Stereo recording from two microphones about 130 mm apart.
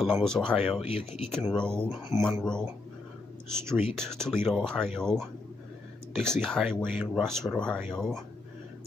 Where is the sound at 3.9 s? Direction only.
5° left (ahead or behind).